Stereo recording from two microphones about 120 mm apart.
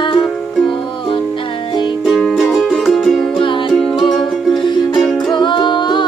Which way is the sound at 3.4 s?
45° left (ahead or behind).